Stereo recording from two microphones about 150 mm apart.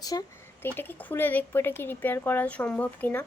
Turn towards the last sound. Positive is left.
turn(degrees=10)  # may be behind; listen again after turning